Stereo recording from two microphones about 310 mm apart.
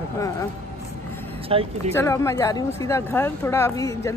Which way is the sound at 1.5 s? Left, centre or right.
Centre.